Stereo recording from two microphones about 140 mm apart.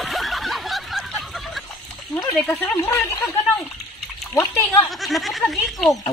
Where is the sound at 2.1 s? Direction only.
10° left (ahead or behind).